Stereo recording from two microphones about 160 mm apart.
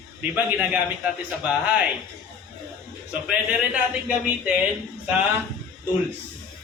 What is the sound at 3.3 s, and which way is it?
Speech, 5° right (ahead or behind).